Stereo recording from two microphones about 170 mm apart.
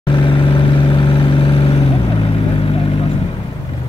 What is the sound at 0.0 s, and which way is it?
Vehicle, 30° left (ahead or behind).